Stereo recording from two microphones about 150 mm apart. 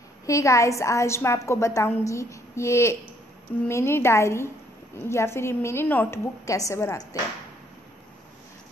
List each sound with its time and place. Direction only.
0.3 s a woman's voice: 20° left (ahead or behind)